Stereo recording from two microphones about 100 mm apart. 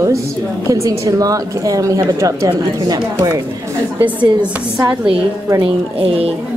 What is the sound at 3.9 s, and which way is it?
Speech, 15° right (ahead or behind).